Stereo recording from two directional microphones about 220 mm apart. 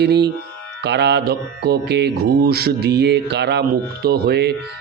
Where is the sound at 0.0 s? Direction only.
50° right (ahead or behind).